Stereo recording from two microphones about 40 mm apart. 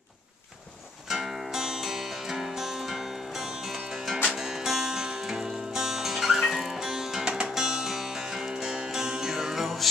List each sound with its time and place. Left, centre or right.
1.0 s music: centre
7.2 s music: right; by 9.8 s centre